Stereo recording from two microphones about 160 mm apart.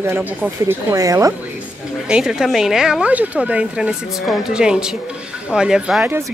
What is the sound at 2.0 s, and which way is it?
Speech, 5° right (ahead or behind).